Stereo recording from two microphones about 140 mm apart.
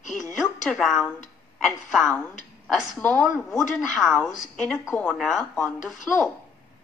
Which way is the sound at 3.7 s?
Centre (ahead or behind).